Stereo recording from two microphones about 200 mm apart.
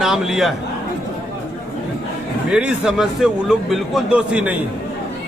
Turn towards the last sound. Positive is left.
turn(degrees=-5)  # may be behind; listen again after turning